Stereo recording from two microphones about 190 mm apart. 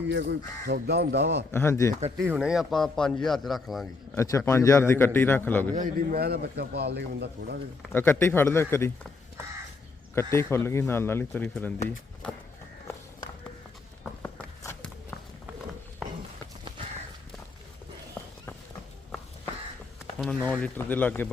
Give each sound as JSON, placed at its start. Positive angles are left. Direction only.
{"t": 0.1, "sound": "a man's voice", "side_deg": -65}
{"t": 1.5, "sound": "a man's voice", "side_deg": 15}
{"t": 2.1, "sound": "a man's voice", "side_deg": -10}
{"t": 4.1, "sound": "a man's voice", "side_deg": 15}
{"t": 5.7, "sound": "a man's voice", "side_deg": -45}
{"t": 7.9, "sound": "a man's voice", "side_deg": 10}
{"t": 10.3, "sound": "a man's voice", "side_deg": 15}
{"t": 14.2, "sound": "a sound", "side_deg": 15}
{"t": 16.0, "sound": "run", "side_deg": 0}
{"t": 20.1, "sound": "a man's voice", "side_deg": 5}